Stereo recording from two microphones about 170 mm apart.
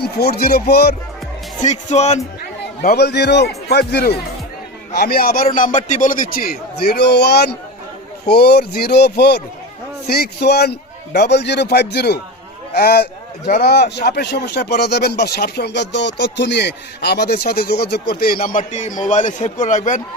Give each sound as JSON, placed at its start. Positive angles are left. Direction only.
{"t": 0.0, "sound": "a man's voice", "side_deg": 70}
{"t": 1.6, "sound": "speech", "side_deg": 40}
{"t": 2.8, "sound": "a man's voice", "side_deg": 70}